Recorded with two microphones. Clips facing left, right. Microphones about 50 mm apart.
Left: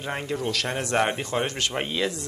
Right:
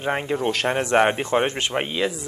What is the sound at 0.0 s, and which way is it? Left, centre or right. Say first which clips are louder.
Speech: right 5 dB; right.